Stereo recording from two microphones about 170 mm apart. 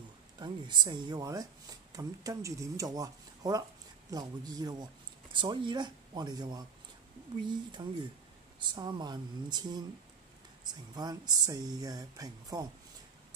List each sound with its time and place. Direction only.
0.4 s speech: 25° right (ahead or behind)